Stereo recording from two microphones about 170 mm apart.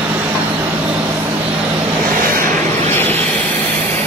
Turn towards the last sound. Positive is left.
turn(degrees=10)  # may be behind; listen again after turning